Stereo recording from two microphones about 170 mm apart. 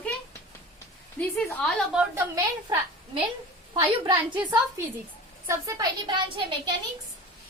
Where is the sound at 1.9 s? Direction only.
10° right (ahead or behind).